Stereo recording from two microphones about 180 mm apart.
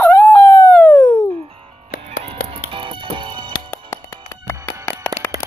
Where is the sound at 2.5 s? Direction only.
30° right (ahead or behind).